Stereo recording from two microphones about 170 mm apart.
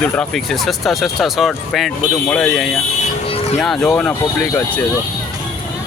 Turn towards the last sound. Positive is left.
turn(degrees=5)  # may be behind; listen again after turning